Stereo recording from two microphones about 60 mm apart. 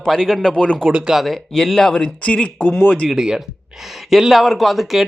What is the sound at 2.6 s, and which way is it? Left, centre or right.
Speech, left.